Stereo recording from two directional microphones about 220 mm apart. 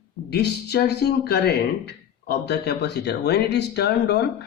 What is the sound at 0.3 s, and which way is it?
Speech, 45° left (ahead or behind).